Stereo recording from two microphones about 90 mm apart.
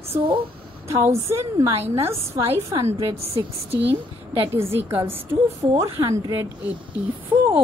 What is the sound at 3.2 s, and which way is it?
A woman's voice, 90° right.